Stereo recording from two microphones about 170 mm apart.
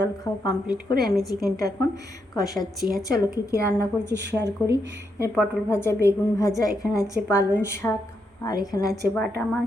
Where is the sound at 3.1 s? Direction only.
15° left (ahead or behind).